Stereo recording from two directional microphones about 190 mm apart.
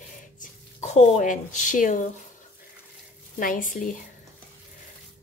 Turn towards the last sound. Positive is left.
turn(degrees=45)  # may be behind; listen again after turning